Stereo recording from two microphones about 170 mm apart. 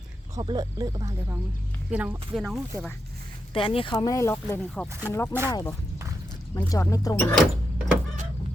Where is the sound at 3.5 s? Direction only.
30° left (ahead or behind).